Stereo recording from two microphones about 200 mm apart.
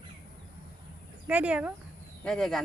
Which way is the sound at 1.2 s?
5° right (ahead or behind).